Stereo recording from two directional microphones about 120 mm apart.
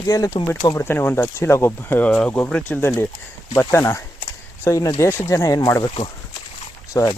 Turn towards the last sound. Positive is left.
turn(degrees=30)  # may be behind; listen again after turning